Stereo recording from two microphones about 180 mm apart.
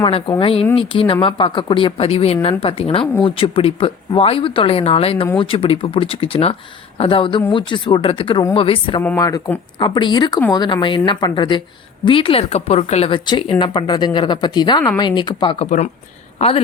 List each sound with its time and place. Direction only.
0.0 s speech: 30° left (ahead or behind)
9.0 s speech: 15° left (ahead or behind); by 16.5 s 35° left (ahead or behind)